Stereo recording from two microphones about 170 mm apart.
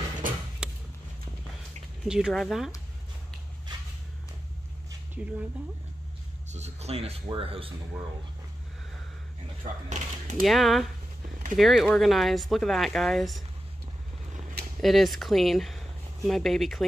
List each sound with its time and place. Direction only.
0.6 s a sound: 5° right (ahead or behind)
2.0 s speech: 5° right (ahead or behind)
5.2 s speech: 5° right (ahead or behind)
6.5 s speech: 40° right (ahead or behind)
9.8 s speech: 45° right (ahead or behind)
10.4 s speech: centre (ahead or behind)
14.8 s speech: centre (ahead or behind)